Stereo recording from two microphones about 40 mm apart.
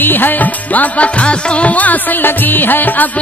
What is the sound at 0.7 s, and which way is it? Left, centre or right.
Music, left.